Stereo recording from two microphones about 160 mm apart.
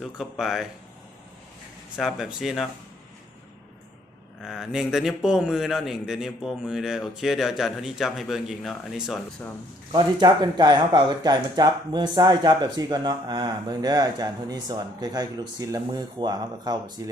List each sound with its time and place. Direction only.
0.0 s a man's voice: centre (ahead or behind)
2.0 s a man's voice: 5° right (ahead or behind)
4.4 s a man's voice: 5° right (ahead or behind)
9.9 s speech: 25° right (ahead or behind)